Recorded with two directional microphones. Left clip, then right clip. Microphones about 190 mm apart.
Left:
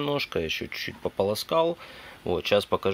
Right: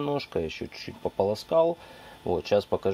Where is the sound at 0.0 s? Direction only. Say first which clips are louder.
Left 1 dB; centre (ahead or behind).